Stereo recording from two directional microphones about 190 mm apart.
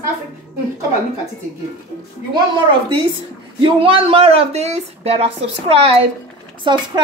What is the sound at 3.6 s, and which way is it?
Speech, 30° right (ahead or behind).